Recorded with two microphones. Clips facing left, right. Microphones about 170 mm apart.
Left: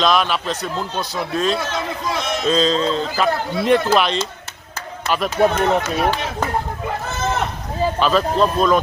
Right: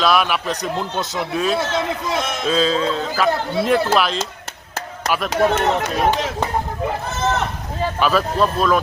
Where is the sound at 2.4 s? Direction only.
5° right (ahead or behind).